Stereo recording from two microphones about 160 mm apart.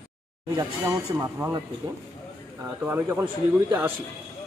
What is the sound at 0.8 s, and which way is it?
Speech, 10° right (ahead or behind).